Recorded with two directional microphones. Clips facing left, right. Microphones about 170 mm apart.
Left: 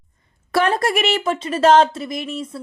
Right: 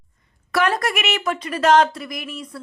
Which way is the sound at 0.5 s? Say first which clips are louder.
Left 3 dB; 30° left (ahead or behind).